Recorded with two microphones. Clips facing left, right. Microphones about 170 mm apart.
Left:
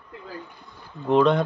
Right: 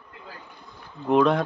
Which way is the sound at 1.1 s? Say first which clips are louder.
Left 1 dB; 5° right (ahead or behind).